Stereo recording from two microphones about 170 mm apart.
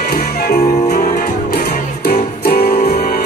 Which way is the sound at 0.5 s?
40° left (ahead or behind).